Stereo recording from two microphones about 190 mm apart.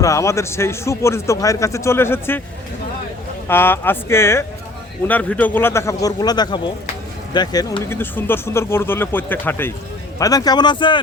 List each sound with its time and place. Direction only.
0.0 s a man's voice: 15° left (ahead or behind)
3.5 s a man's voice: 10° left (ahead or behind)